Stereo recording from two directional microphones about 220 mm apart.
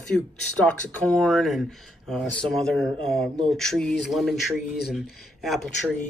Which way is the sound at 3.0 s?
25° right (ahead or behind).